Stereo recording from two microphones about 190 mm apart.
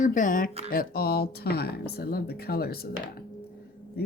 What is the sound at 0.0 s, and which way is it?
Speech, 45° left (ahead or behind).